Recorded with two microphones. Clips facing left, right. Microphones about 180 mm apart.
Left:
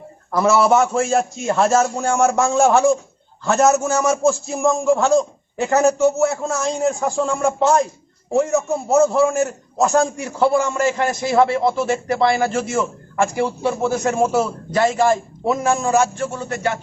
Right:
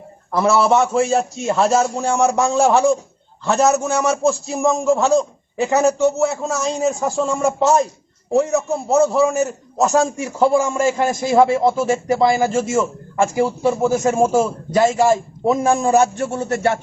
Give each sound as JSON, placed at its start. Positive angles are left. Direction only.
{"t": 0.3, "sound": "a man's voice", "side_deg": 0}
{"t": 8.9, "sound": "a man's voice", "side_deg": 0}